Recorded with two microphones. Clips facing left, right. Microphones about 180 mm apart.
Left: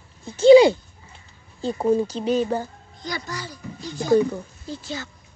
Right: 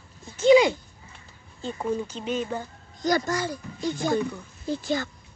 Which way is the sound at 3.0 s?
45° right (ahead or behind).